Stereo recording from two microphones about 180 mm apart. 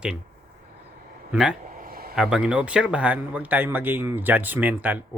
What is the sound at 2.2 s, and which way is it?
Speech, 5° right (ahead or behind).